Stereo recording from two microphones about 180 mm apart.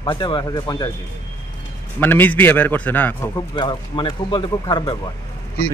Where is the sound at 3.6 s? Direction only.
25° left (ahead or behind).